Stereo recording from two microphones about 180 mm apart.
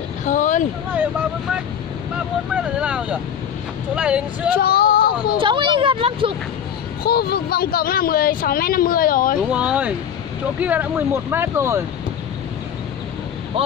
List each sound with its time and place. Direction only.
0.2 s a sound: 45° left (ahead or behind)
2.5 s speech: 5° right (ahead or behind)
4.6 s speech: 55° left (ahead or behind)
5.4 s speech: 25° right (ahead or behind)
7.0 s speech: 60° left (ahead or behind)
9.5 s speech: 5° right (ahead or behind)